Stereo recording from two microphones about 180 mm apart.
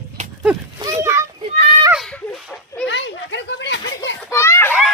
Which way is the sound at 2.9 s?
80° left.